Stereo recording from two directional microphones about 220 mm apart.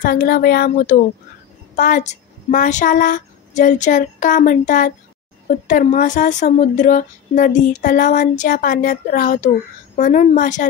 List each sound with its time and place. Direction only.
0.0 s speech: 40° left (ahead or behind)